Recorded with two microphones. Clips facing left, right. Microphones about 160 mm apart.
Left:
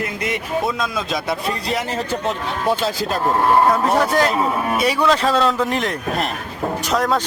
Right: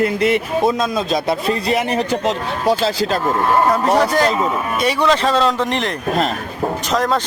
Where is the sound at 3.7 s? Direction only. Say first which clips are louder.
Right 2 dB; centre (ahead or behind).